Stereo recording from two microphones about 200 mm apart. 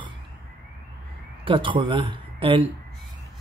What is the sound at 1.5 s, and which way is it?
Speech, 25° right (ahead or behind).